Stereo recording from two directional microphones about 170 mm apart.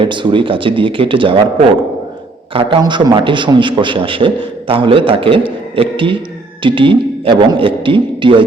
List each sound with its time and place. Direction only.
0.0 s a man's voice: 30° right (ahead or behind)